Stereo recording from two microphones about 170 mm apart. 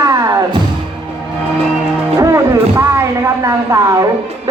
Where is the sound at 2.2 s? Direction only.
15° right (ahead or behind).